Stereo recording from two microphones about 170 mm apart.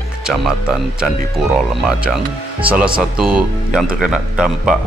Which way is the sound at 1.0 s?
Centre (ahead or behind).